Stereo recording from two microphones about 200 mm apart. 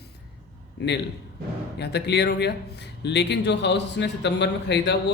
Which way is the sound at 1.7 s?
55° left (ahead or behind).